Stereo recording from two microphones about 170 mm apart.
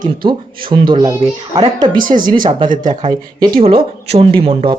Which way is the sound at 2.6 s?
50° right (ahead or behind).